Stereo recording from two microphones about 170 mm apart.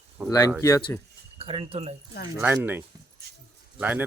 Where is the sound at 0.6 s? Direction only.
20° left (ahead or behind).